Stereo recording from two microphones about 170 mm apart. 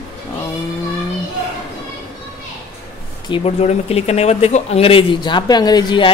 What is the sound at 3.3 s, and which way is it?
Speech, 40° left (ahead or behind).